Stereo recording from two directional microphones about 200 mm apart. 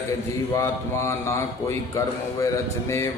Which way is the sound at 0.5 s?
15° left (ahead or behind).